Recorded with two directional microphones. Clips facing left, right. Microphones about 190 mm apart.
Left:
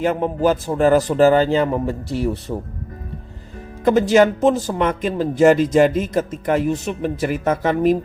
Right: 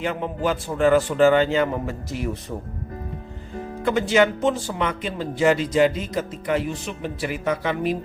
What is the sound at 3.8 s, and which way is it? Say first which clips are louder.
A woman's voice: left 5 dB; 40° left (ahead or behind).